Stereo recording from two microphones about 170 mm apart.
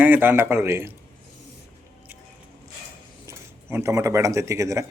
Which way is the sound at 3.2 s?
15° right (ahead or behind).